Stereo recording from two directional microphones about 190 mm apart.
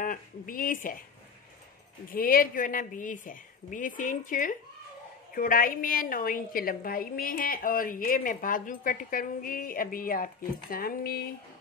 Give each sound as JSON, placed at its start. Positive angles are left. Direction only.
{"t": 0.0, "sound": "speech", "side_deg": 45}
{"t": 2.0, "sound": "a woman's voice", "side_deg": 50}